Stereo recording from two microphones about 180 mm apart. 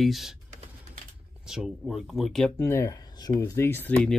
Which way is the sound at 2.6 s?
15° left (ahead or behind).